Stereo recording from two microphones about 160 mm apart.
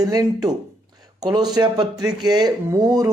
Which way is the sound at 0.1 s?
25° right (ahead or behind).